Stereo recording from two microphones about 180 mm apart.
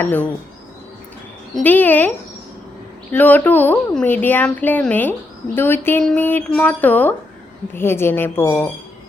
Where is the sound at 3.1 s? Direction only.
10° left (ahead or behind).